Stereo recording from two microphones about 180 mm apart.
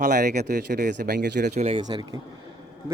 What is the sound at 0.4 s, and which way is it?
Speech, 65° right (ahead or behind).